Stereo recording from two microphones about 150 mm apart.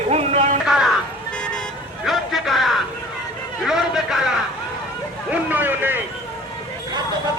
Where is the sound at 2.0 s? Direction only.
Centre (ahead or behind).